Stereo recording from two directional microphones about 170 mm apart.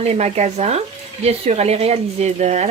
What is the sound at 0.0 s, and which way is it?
Speech, 40° right (ahead or behind).